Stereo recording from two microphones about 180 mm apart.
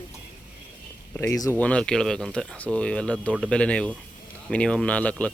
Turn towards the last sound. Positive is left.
turn(degrees=5)  # may be behind; listen again after turning